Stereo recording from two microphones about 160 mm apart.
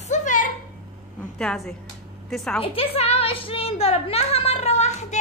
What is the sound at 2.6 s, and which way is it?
A woman's voice, 35° left (ahead or behind).